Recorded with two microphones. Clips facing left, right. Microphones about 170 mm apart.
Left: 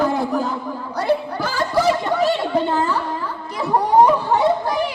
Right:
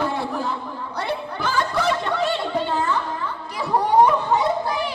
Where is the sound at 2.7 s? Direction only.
30° left (ahead or behind).